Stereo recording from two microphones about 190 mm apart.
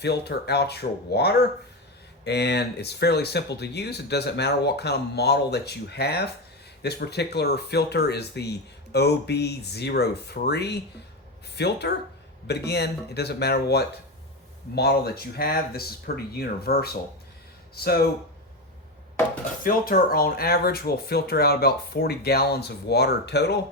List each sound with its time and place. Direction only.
0.0 s speech: 60° left (ahead or behind)
19.6 s speech: 50° left (ahead or behind)